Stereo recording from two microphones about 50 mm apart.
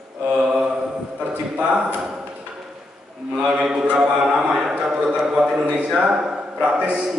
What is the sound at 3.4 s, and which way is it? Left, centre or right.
A man's voice, centre.